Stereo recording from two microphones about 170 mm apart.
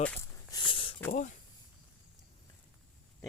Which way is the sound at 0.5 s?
30° left (ahead or behind).